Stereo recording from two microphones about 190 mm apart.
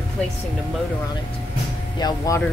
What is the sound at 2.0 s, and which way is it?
Speech, 15° left (ahead or behind).